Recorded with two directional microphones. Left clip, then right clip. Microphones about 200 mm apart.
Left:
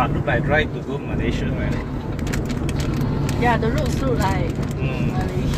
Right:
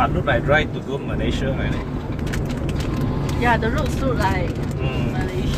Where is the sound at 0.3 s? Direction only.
30° right (ahead or behind).